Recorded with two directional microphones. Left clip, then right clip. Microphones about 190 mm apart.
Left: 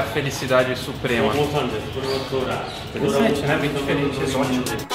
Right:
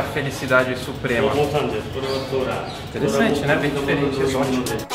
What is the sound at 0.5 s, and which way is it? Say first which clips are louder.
Speech: right 1 dB; 50° left (ahead or behind).